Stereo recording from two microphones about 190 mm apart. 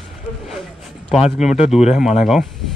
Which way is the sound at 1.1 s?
5° right (ahead or behind).